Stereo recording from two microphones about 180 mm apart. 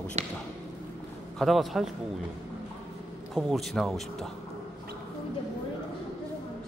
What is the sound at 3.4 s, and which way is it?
Speech, centre (ahead or behind).